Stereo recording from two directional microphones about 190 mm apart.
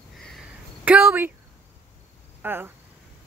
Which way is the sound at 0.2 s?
Centre (ahead or behind).